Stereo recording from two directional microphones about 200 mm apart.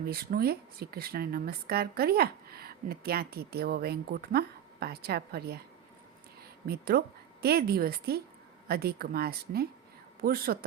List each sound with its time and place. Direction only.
0.0 s speech: 50° right (ahead or behind)
6.7 s speech: 50° right (ahead or behind)